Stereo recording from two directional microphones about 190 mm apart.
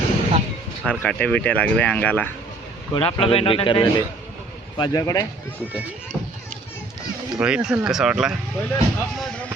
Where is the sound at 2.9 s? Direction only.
25° left (ahead or behind).